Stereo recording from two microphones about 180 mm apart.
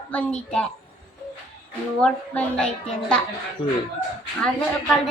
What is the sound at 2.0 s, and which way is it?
Speech, 5° left (ahead or behind).